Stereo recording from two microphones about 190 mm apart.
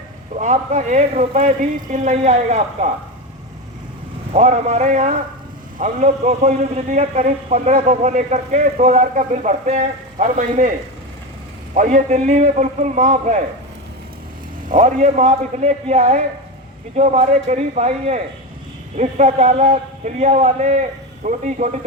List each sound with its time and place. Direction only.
0.3 s a man's voice: 40° right (ahead or behind)
4.3 s a man's voice: 35° right (ahead or behind)
11.7 s a man's voice: 45° right (ahead or behind)
14.7 s a man's voice: 40° right (ahead or behind)